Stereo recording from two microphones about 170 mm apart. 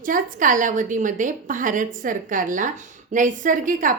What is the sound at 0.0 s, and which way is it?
A woman's voice, 50° right (ahead or behind).